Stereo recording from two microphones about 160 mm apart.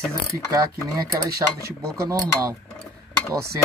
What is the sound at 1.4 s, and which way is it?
Speech, 20° right (ahead or behind).